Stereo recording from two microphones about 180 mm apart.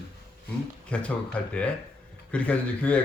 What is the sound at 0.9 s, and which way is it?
Speech, 5° left (ahead or behind).